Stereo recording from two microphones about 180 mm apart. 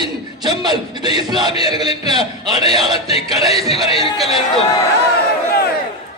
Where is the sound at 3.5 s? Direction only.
35° left (ahead or behind).